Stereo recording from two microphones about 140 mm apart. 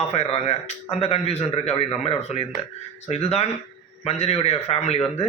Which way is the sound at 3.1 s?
50° left (ahead or behind).